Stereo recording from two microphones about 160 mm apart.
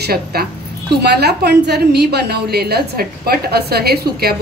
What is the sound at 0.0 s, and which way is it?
A woman's voice, 75° right (ahead or behind).